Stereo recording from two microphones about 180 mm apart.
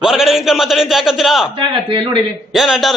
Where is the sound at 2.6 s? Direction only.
Centre (ahead or behind).